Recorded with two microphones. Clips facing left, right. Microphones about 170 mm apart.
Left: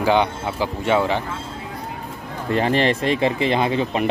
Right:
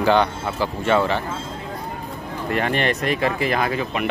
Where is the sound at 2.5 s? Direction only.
30° left (ahead or behind).